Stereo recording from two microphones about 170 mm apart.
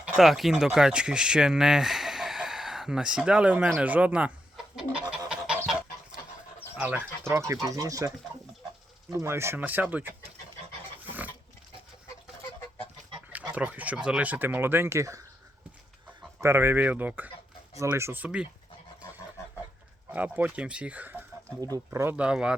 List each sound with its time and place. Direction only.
0.0 s speech: centre (ahead or behind)
5.3 s fowl: 5° right (ahead or behind)
6.7 s speech: 10° right (ahead or behind)
11.0 s pig: 10° right (ahead or behind)
13.3 s speech: 10° right (ahead or behind)
16.4 s speech: 15° right (ahead or behind)
20.1 s speech: 10° right (ahead or behind)